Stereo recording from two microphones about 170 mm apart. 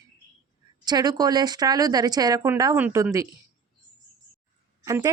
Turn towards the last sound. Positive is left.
turn(degrees=-20)  # may be behind; listen again after turning